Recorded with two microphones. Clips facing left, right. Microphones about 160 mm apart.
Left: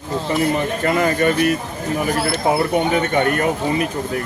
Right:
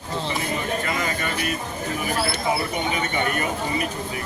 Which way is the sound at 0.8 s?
65° left (ahead or behind).